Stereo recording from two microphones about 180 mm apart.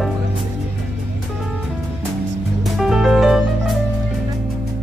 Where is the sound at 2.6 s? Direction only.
Centre (ahead or behind).